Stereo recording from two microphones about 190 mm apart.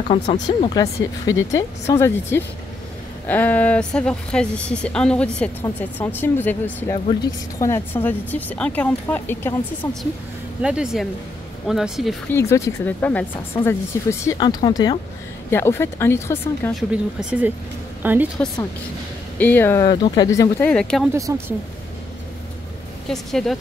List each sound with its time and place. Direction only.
0.1 s speech: 30° left (ahead or behind)
1.5 s a woman's voice: 15° left (ahead or behind)
10.6 s speech: 5° right (ahead or behind)
12.3 s a woman's voice: 15° left (ahead or behind)
16.7 s speech: 5° right (ahead or behind)
19.3 s a woman's voice: 10° left (ahead or behind)
19.9 s a woman's voice: 20° left (ahead or behind); by 21.1 s 5° left (ahead or behind)
21.1 s speech: 15° right (ahead or behind)
23.0 s speech: centre (ahead or behind)